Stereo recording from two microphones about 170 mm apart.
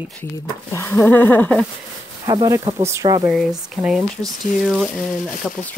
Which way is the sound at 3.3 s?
5° right (ahead or behind).